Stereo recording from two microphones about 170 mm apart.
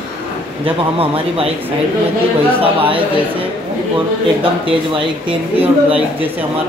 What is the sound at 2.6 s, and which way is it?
Speech, 30° right (ahead or behind).